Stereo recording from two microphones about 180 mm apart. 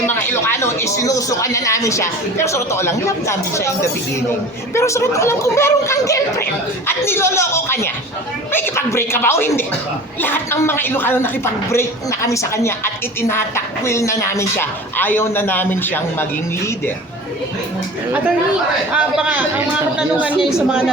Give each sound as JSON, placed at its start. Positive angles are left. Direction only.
{"t": 0.1, "sound": "speech", "side_deg": 10}
{"t": 18.9, "sound": "a man's voice", "side_deg": -5}